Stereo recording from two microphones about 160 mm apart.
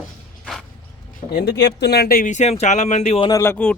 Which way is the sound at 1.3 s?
90° left.